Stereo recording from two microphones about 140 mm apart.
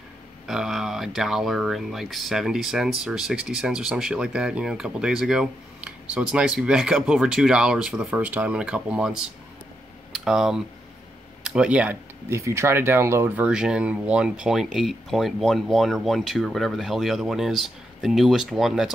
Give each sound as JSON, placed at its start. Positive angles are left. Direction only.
{"t": 0.5, "sound": "speech", "side_deg": -5}
{"t": 13.5, "sound": "speech", "side_deg": -5}